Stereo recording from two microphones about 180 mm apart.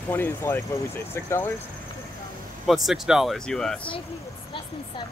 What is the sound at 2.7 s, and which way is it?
Speech, centre (ahead or behind).